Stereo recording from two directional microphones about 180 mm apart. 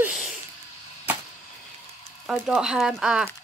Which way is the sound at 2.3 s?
5° right (ahead or behind).